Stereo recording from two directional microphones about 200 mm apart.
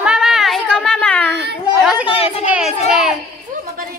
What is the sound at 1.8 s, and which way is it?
Speech, 5° right (ahead or behind).